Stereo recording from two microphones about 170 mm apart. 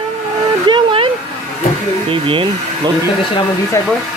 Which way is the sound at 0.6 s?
30° right (ahead or behind).